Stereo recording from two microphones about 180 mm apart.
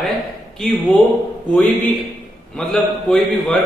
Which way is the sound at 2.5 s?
5° left (ahead or behind).